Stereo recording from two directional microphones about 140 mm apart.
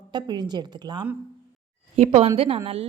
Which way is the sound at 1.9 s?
50° right (ahead or behind).